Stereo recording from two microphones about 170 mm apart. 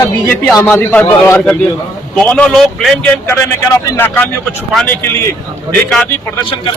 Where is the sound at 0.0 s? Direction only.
15° left (ahead or behind).